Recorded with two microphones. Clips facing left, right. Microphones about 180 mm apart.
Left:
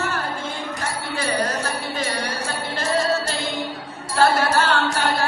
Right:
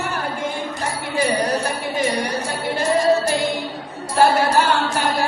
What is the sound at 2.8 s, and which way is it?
Music, 15° right (ahead or behind).